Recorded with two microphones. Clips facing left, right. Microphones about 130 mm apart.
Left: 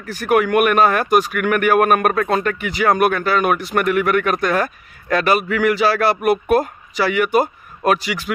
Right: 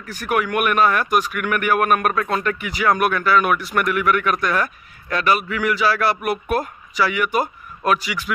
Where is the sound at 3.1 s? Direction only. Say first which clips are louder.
Left 1 dB; 30° left (ahead or behind); by 5.7 s 55° left (ahead or behind).